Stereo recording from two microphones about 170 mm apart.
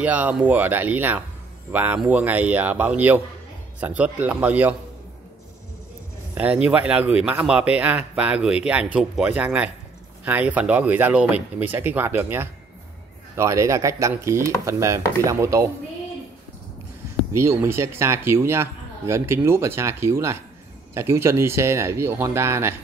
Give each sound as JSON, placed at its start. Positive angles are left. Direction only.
{"t": 0.0, "sound": "a man's voice", "side_deg": -10}
{"t": 6.3, "sound": "a man's voice", "side_deg": -10}
{"t": 17.3, "sound": "a man's voice", "side_deg": -15}